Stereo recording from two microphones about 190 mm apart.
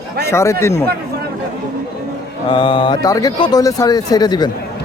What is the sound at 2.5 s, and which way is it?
Speech, 25° left (ahead or behind).